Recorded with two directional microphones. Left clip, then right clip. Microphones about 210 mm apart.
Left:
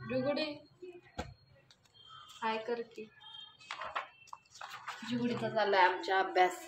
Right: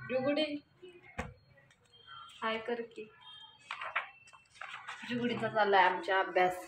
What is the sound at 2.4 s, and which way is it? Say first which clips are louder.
Speech: even; centre (ahead or behind).